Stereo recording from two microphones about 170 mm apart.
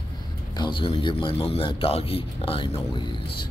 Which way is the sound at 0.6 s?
30° left (ahead or behind).